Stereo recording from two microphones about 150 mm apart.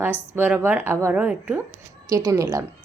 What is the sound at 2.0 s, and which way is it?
Speech, 25° right (ahead or behind).